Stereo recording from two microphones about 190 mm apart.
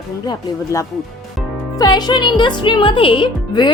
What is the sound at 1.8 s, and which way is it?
Speech, 20° left (ahead or behind).